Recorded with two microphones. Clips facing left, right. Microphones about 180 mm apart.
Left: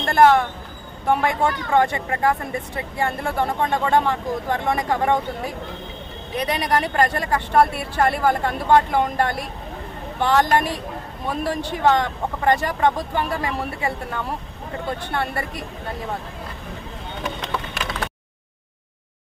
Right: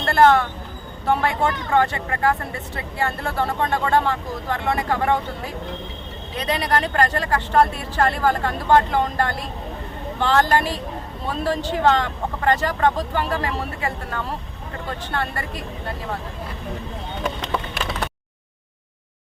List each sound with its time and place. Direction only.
0.0 s speech: 10° left (ahead or behind)
6.3 s speech: 15° left (ahead or behind)